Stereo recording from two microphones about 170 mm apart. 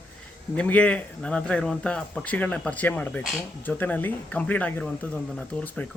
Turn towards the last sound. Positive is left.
turn(degrees=10)  # may be behind; listen again after turning